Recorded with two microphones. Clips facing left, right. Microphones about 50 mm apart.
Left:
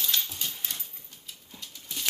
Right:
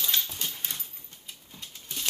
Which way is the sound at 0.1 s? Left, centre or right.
Right.